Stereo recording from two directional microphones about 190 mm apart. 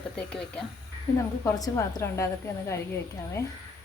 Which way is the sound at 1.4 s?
20° left (ahead or behind).